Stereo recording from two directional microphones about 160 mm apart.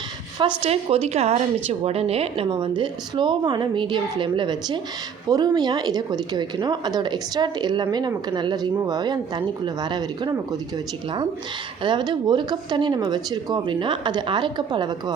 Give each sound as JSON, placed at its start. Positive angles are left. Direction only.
{"t": 0.3, "sound": "a woman's voice", "side_deg": -35}
{"t": 11.8, "sound": "speech", "side_deg": -30}